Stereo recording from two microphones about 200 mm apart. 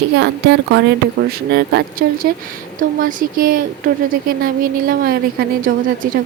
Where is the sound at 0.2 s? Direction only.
60° right (ahead or behind).